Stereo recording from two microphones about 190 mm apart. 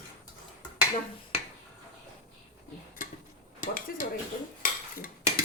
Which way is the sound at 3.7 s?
50° left (ahead or behind).